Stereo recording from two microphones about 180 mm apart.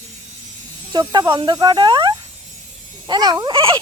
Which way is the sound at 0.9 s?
20° right (ahead or behind).